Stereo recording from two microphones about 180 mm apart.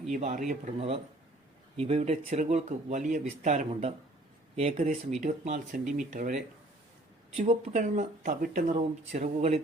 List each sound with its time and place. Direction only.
0.1 s speech: 45° right (ahead or behind)
5.2 s speech: 45° right (ahead or behind)
7.3 s speech: 35° right (ahead or behind)